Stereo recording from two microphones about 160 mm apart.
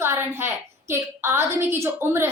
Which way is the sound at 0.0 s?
15° right (ahead or behind).